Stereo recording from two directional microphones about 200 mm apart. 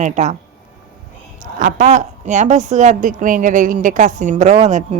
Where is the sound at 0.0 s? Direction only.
35° right (ahead or behind).